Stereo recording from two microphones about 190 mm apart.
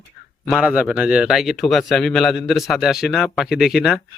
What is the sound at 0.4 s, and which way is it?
Speech, 5° right (ahead or behind).